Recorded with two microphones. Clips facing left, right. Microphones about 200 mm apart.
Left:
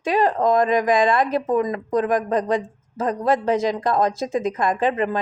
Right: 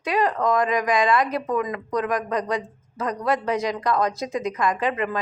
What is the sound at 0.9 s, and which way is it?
Speech, 50° left (ahead or behind).